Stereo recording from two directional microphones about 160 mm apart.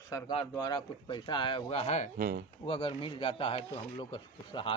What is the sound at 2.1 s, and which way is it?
Speech, 70° right (ahead or behind).